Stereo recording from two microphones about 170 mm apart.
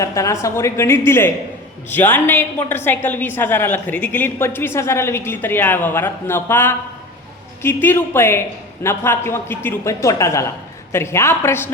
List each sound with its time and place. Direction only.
0.0 s a woman's voice: 20° left (ahead or behind)